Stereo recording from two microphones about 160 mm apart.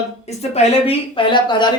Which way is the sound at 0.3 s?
40° left (ahead or behind).